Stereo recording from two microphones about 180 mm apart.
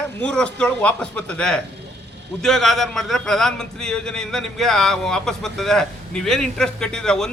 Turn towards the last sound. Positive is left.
turn(degrees=5)  # may be behind; listen again after turning